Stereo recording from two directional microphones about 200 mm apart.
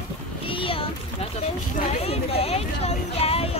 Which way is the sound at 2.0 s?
30° left (ahead or behind).